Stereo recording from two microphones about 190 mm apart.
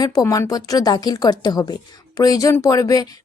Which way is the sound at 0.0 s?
20° left (ahead or behind).